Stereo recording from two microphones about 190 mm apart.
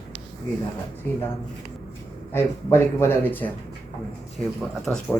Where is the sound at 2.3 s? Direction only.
15° left (ahead or behind).